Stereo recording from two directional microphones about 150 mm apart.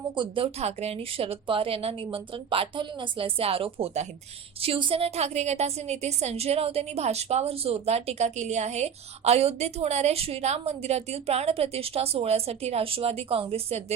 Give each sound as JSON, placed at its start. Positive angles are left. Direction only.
{"t": 0.2, "sound": "a woman's voice", "side_deg": -35}